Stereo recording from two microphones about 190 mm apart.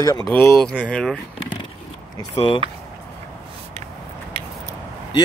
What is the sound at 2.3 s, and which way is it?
Speech, 25° left (ahead or behind).